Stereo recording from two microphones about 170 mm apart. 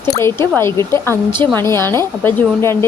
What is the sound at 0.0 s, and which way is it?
Speech, 15° left (ahead or behind).